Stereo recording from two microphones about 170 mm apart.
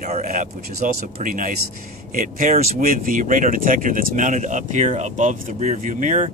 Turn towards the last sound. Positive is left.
turn(degrees=-45)  # may be behind; listen again after turning